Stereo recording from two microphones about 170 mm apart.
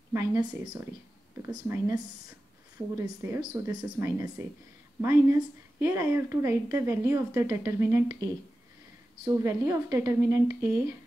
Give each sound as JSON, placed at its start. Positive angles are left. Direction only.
{"t": 0.1, "sound": "a woman's voice", "side_deg": -20}
{"t": 3.0, "sound": "a woman's voice", "side_deg": -15}